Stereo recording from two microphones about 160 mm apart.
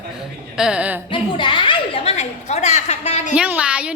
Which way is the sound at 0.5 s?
5° right (ahead or behind).